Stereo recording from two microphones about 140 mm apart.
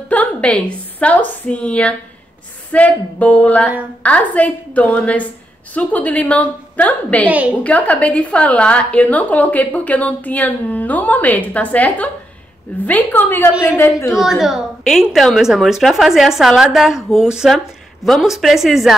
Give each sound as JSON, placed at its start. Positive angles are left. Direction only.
{"t": 0.1, "sound": "a woman's voice", "side_deg": 10}
{"t": 7.2, "sound": "a woman's voice", "side_deg": -10}
{"t": 7.6, "sound": "a woman's voice", "side_deg": 10}
{"t": 14.1, "sound": "a woman's voice", "side_deg": 0}